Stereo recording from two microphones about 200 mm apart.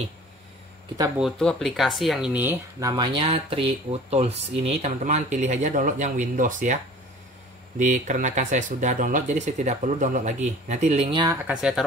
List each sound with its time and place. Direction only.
0.9 s speech: 15° right (ahead or behind)
1.2 s speech: centre (ahead or behind); by 6.8 s 40° right (ahead or behind)
7.8 s speech: 40° right (ahead or behind); by 11.3 s 25° right (ahead or behind)
11.3 s speech: 5° right (ahead or behind)